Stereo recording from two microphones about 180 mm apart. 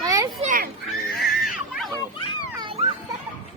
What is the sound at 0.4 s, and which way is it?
Honk, 50° right (ahead or behind).